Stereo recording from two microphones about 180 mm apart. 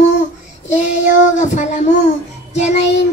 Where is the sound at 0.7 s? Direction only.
40° left (ahead or behind).